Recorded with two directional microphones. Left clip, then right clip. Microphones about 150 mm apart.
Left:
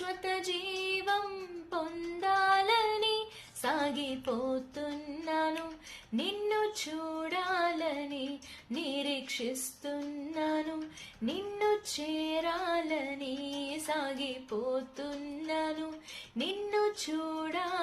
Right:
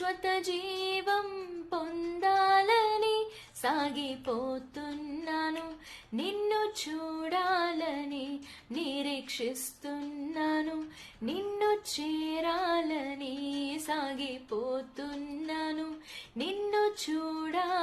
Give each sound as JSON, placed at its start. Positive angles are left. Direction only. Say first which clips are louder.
{"t": 0.0, "sound": "female singing", "louder": "right 4 dB", "side_deg": -20}
{"t": 3.6, "sound": "music", "louder": "right 1 dB", "side_deg": -25}
{"t": 6.1, "sound": "female singing", "louder": "right 1 dB", "side_deg": -20}